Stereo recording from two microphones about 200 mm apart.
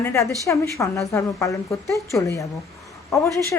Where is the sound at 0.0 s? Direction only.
15° left (ahead or behind).